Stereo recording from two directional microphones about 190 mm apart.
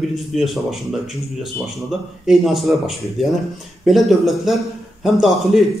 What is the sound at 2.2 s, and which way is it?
A man's voice, centre (ahead or behind).